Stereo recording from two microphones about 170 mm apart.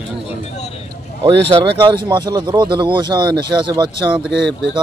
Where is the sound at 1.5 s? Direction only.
30° right (ahead or behind).